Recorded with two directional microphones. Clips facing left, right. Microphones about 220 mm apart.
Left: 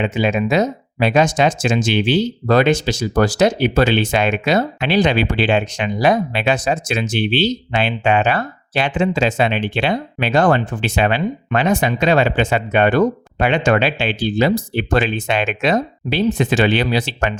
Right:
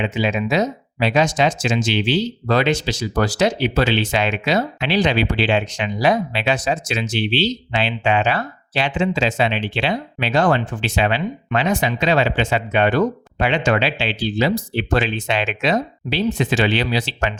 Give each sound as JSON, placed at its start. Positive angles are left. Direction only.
{"t": 0.0, "sound": "speech", "side_deg": 50}